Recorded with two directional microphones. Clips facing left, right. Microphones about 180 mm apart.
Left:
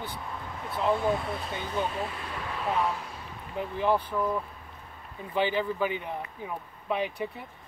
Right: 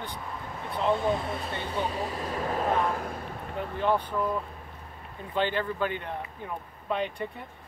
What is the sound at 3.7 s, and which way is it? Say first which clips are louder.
Speech: even; 5° left (ahead or behind).